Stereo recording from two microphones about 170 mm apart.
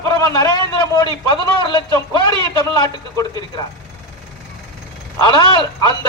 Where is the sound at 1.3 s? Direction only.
30° left (ahead or behind).